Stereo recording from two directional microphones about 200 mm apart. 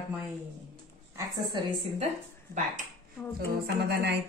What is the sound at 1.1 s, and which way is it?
Speech, 20° right (ahead or behind).